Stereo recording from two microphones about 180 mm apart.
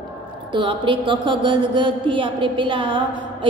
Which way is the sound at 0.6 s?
25° right (ahead or behind).